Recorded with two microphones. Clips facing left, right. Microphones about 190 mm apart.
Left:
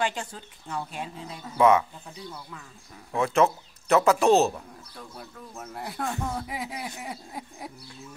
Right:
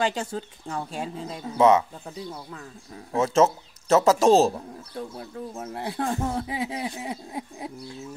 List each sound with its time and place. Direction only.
0.0 s speech: 25° right (ahead or behind)
1.6 s speech: 25° right (ahead or behind)
3.1 s speech: 25° right (ahead or behind)